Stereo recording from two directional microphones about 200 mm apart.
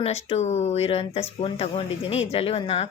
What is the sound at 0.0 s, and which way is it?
Speech, 30° left (ahead or behind).